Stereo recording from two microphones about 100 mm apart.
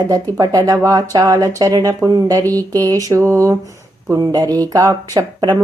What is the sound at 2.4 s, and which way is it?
Speech, 20° left (ahead or behind).